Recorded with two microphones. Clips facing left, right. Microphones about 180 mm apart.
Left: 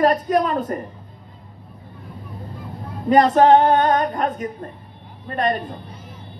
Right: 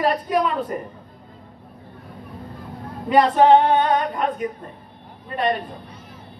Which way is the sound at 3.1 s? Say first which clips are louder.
Left 1 dB; 45° left (ahead or behind).